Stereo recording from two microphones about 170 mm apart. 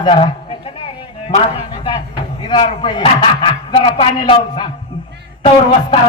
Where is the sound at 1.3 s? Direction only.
35° left (ahead or behind).